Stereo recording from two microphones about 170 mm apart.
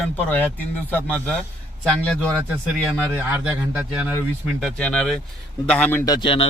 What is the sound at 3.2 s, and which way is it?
Speech, 10° right (ahead or behind).